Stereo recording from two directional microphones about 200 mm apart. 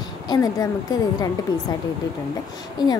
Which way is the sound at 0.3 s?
20° left (ahead or behind).